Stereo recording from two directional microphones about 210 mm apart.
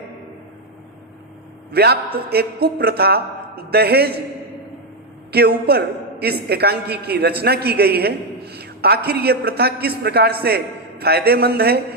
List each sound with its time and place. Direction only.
1.7 s a man's voice: 50° right (ahead or behind)
5.3 s a man's voice: 50° right (ahead or behind)